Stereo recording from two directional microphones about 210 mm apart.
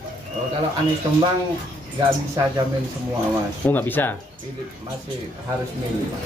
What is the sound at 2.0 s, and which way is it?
Speech, 20° right (ahead or behind).